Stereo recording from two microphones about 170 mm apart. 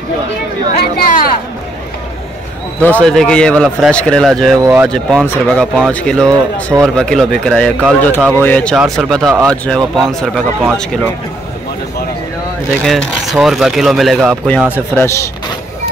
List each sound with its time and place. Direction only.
0.7 s speech: 60° left (ahead or behind)
2.8 s speech: 5° left (ahead or behind)
4.6 s speech: 15° right (ahead or behind)
4.8 s speech: 5° left (ahead or behind)
6.2 s speech: 15° right (ahead or behind)
7.0 s speech: 5° left (ahead or behind)
12.8 s speech: centre (ahead or behind)
15.0 s speech: 15° left (ahead or behind)